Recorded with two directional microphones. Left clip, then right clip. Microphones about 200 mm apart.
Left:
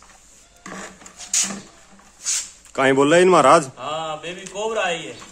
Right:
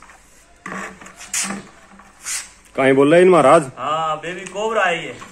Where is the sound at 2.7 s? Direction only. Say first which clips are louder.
Right 3 dB; 15° left (ahead or behind).